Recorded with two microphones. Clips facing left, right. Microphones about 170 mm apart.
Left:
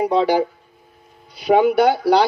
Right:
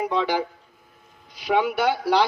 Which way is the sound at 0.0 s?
35° left (ahead or behind).